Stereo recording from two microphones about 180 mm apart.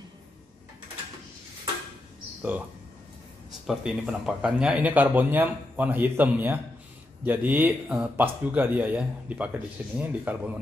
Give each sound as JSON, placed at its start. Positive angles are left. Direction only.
{"t": 3.6, "sound": "speech", "side_deg": -5}